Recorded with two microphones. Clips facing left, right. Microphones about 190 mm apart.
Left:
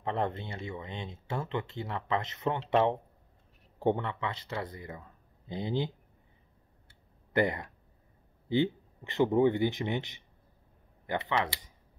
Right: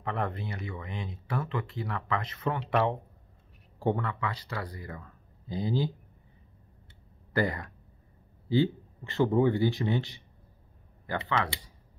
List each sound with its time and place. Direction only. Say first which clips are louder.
0.0 s speech: left 1 dB; 25° left (ahead or behind)
7.3 s speech: left 1 dB; 20° left (ahead or behind)